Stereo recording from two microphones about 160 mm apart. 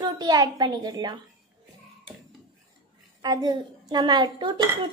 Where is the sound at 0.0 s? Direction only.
25° right (ahead or behind).